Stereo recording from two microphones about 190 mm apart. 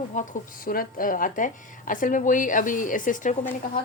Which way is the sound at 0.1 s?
45° left (ahead or behind).